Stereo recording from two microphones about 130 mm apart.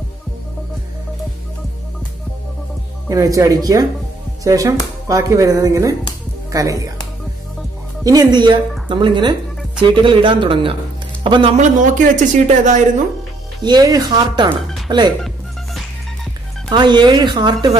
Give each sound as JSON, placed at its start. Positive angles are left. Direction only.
{"t": 3.1, "sound": "speech", "side_deg": -25}
{"t": 8.0, "sound": "speech", "side_deg": -30}
{"t": 11.5, "sound": "speech", "side_deg": -75}
{"t": 13.7, "sound": "speech", "side_deg": -30}
{"t": 16.6, "sound": "speech", "side_deg": -35}